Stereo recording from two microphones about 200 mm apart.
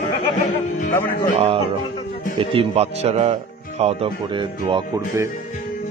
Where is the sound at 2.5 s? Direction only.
30° right (ahead or behind).